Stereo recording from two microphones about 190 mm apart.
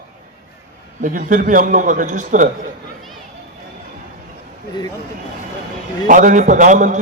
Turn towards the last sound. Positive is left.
turn(degrees=-40)  # may be behind; listen again after turning